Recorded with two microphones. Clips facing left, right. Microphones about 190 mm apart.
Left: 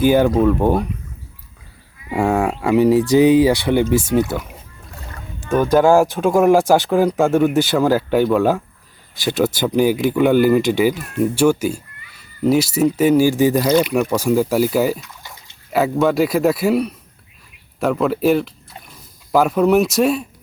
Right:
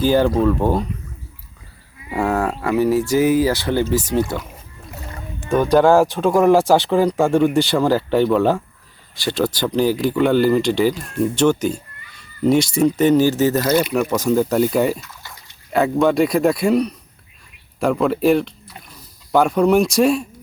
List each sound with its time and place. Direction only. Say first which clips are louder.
0.0 s speech: left 2 dB; 10° left (ahead or behind)
2.0 s speech: left 2 dB; 20° left (ahead or behind)
2.3 s speech: left 4 dB; 10° left (ahead or behind)
4.9 s boat: right 3 dB; 20° right (ahead or behind)
5.7 s speech: even; 5° left (ahead or behind)